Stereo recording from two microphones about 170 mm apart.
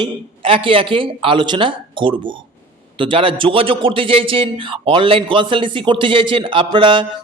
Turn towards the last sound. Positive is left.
turn(degrees=-30)  # may be behind; listen again after turning